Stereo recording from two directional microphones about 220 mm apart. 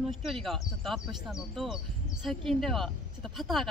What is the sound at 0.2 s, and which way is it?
Speech, centre (ahead or behind).